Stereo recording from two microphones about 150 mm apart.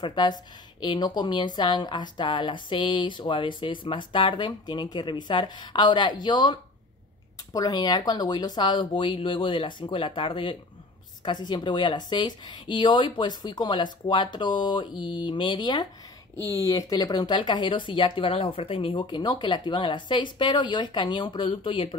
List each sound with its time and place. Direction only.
0.0 s speech: 30° left (ahead or behind)